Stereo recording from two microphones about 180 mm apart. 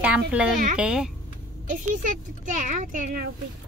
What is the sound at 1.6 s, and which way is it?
Speech, 45° right (ahead or behind).